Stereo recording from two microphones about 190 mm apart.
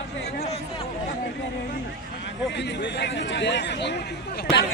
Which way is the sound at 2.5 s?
65° left (ahead or behind).